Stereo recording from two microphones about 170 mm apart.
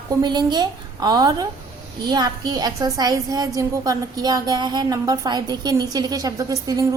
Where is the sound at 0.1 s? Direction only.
25° right (ahead or behind).